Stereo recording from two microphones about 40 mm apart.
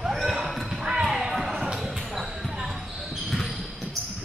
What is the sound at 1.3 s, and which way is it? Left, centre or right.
Basketball bounce, centre.